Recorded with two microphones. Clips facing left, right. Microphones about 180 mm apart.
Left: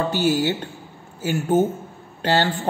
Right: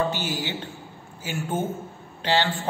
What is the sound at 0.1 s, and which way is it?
A man's voice, 45° left (ahead or behind).